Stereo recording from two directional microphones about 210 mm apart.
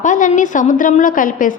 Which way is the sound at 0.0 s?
35° left (ahead or behind).